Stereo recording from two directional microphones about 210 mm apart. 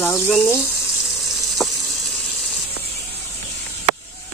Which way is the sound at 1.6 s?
Centre (ahead or behind).